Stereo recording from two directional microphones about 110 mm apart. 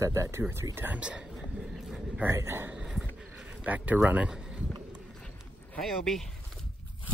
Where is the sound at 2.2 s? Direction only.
25° right (ahead or behind).